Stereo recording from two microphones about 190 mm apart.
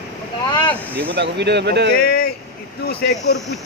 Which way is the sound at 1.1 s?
65° right (ahead or behind).